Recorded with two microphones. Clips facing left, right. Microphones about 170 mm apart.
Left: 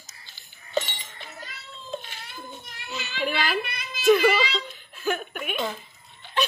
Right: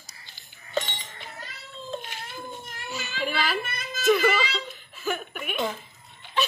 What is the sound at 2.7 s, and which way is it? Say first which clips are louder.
Child singing: left 2 dB; 45° right (ahead or behind).